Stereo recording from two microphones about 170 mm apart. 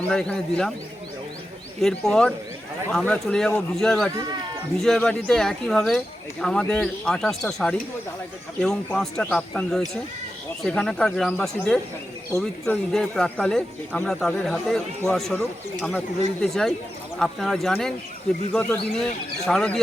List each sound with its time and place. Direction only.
0.1 s speech: 5° left (ahead or behind)
1.8 s speech: 5° left (ahead or behind)
16.4 s speech: 5° left (ahead or behind)